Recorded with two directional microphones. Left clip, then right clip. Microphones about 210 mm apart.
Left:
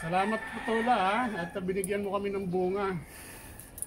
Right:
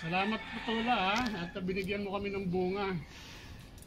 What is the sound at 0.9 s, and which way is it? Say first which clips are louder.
Speech: left 3 dB; 20° left (ahead or behind).